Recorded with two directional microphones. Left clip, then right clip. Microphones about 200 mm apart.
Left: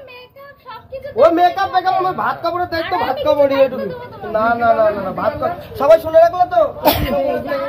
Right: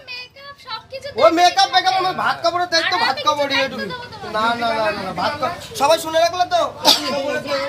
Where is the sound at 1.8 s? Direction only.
20° right (ahead or behind).